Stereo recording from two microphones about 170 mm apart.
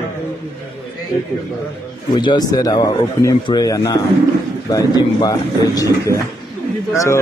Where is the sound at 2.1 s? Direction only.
25° left (ahead or behind).